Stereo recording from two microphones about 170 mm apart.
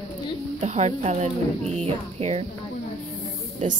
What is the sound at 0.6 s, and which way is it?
Speech, 40° right (ahead or behind).